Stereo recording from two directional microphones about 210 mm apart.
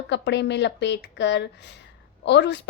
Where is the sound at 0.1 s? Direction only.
55° left (ahead or behind).